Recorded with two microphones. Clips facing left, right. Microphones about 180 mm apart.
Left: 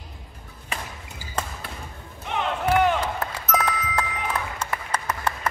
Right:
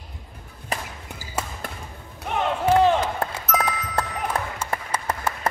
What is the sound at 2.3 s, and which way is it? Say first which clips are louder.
Battle cry: right 2 dB; 45° right (ahead or behind).